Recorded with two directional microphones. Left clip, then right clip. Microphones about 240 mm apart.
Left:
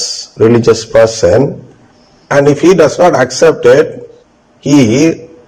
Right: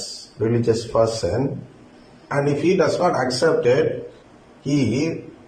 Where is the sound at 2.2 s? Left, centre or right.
Left.